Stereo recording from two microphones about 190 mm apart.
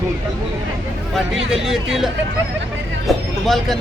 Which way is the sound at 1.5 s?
Centre (ahead or behind).